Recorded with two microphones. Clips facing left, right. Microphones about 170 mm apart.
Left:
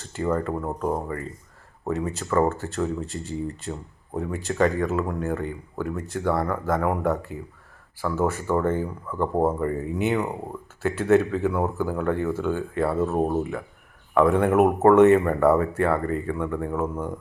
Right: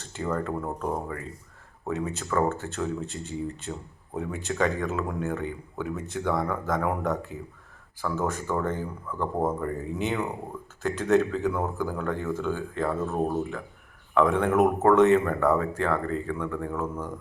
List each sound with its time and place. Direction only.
0.2 s speech: 5° left (ahead or behind)
9.1 s speech: 15° left (ahead or behind)
9.5 s speech: 5° left (ahead or behind)
13.1 s speech: 20° left (ahead or behind)
14.1 s speech: 10° left (ahead or behind)
16.8 s speech: 15° left (ahead or behind)